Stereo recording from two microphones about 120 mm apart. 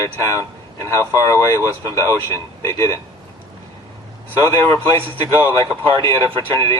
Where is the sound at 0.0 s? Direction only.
25° left (ahead or behind).